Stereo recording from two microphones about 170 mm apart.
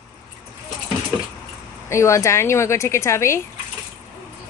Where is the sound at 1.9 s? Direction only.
15° left (ahead or behind).